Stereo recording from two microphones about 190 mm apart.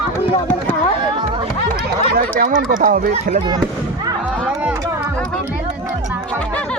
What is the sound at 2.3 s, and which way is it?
Speech, 45° right (ahead or behind).